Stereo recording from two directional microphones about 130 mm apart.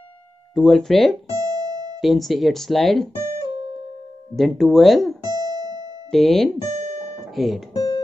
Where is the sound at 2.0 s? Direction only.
Centre (ahead or behind).